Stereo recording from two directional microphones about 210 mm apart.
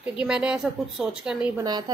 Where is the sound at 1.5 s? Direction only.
20° right (ahead or behind).